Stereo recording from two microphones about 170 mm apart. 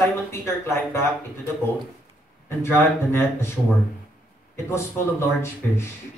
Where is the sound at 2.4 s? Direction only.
15° left (ahead or behind).